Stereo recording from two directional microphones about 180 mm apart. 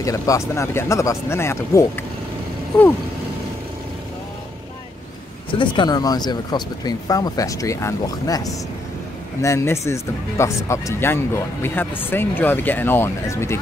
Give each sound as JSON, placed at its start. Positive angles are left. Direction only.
{"t": 0.0, "sound": "speech", "side_deg": 15}
{"t": 5.5, "sound": "speech", "side_deg": 25}